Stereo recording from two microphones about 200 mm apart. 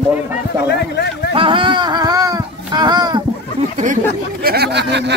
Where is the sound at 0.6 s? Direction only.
55° left (ahead or behind).